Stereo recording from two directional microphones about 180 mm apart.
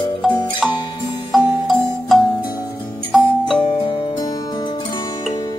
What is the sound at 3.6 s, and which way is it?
Music, 25° left (ahead or behind).